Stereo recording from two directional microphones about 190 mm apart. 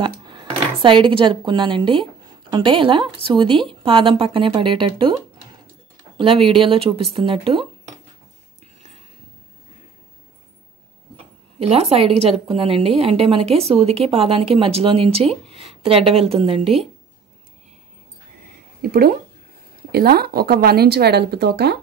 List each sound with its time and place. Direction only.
0.0 s speech: 25° right (ahead or behind)
11.6 s a woman's voice: 30° right (ahead or behind)
18.8 s speech: 55° right (ahead or behind)